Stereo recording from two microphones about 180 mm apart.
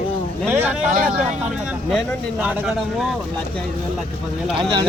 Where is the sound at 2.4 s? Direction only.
5° right (ahead or behind).